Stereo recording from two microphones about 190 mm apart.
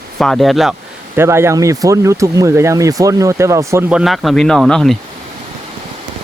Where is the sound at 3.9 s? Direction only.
Centre (ahead or behind).